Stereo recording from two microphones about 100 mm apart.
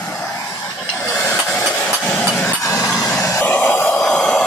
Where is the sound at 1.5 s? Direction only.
10° left (ahead or behind).